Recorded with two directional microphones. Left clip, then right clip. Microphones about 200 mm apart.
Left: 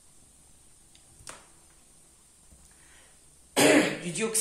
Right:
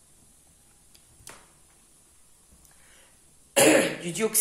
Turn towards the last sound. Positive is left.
turn(degrees=-35)  # may be behind; listen again after turning